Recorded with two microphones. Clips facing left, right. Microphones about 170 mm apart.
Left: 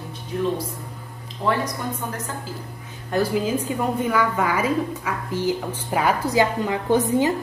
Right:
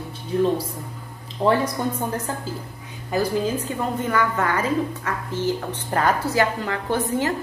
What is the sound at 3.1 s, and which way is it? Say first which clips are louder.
A woman's voice: left 1 dB; 10° left (ahead or behind).